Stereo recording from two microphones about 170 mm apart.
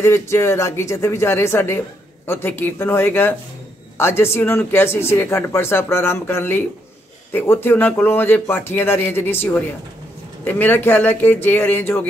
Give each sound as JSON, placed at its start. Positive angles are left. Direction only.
{"t": 0.0, "sound": "speech", "side_deg": 15}